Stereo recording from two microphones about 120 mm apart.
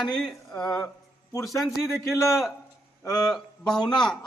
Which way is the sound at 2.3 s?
Centre (ahead or behind).